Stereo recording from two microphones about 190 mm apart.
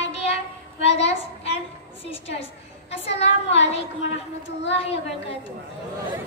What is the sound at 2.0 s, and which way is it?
Speech, 30° left (ahead or behind).